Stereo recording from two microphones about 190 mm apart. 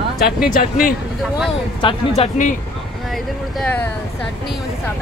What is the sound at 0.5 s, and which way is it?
Speech, 45° left (ahead or behind).